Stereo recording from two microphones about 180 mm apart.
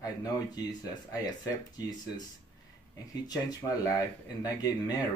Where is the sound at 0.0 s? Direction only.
20° left (ahead or behind).